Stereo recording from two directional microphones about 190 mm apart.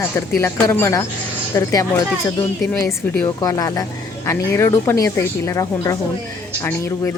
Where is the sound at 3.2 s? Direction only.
15° left (ahead or behind).